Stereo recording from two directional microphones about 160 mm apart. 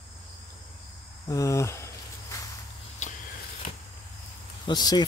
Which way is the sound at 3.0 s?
45° left (ahead or behind).